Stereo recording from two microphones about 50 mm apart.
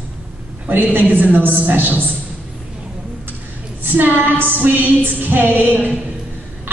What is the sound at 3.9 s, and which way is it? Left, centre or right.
Music, right.